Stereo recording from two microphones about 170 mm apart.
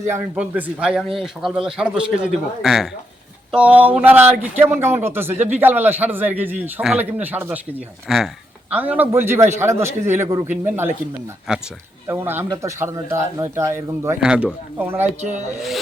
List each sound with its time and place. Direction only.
0.1 s a man's voice: 10° right (ahead or behind)
14.2 s a man's voice: 5° right (ahead or behind)
15.2 s speech: 40° right (ahead or behind)